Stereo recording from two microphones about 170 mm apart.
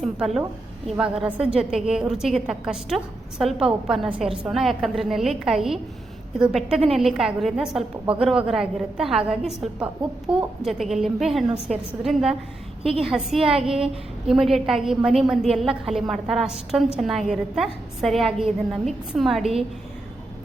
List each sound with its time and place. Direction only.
0.0 s a woman's voice: centre (ahead or behind)
13.4 s a woman's voice: 35° right (ahead or behind)
14.3 s a woman's voice: centre (ahead or behind)